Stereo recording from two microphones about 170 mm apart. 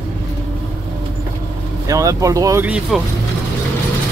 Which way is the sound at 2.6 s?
5° right (ahead or behind).